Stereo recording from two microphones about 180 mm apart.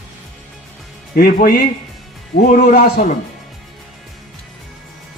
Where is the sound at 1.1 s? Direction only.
50° left (ahead or behind).